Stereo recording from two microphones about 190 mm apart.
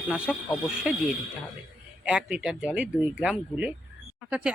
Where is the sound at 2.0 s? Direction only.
5° right (ahead or behind).